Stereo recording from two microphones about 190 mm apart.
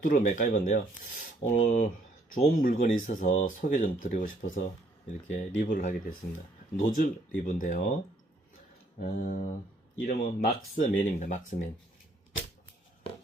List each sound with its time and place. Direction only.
0.0 s speech: 45° left (ahead or behind)
9.0 s speech: 45° left (ahead or behind)